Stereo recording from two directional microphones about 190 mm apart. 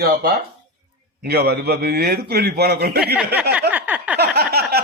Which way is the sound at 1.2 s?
55° right (ahead or behind).